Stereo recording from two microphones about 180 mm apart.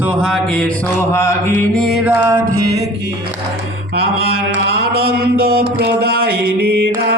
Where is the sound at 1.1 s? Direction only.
15° left (ahead or behind).